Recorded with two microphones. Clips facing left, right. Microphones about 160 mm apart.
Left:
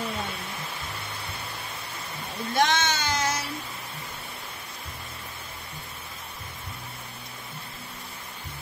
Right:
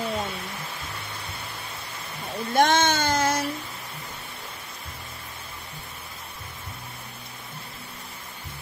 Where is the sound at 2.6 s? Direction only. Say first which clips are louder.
Right 4 dB; 50° right (ahead or behind).